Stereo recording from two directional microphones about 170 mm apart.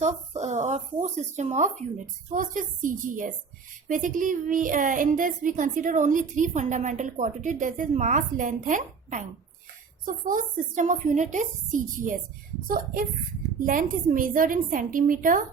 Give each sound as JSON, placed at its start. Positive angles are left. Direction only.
{"t": 0.0, "sound": "a woman's voice", "side_deg": -45}